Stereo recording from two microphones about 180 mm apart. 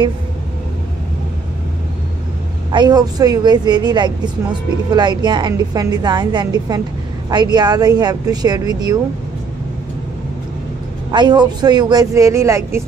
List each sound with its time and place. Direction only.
2.7 s a woman's voice: 25° right (ahead or behind)
11.1 s a woman's voice: 25° right (ahead or behind)